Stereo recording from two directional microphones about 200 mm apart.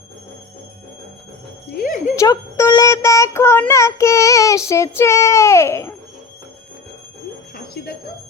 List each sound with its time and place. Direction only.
1.7 s music: 45° left (ahead or behind)
2.1 s a child's voice: 15° left (ahead or behind)
7.5 s bell: 50° left (ahead or behind)